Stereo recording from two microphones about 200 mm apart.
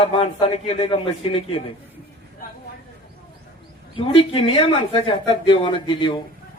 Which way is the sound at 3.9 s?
25° left (ahead or behind).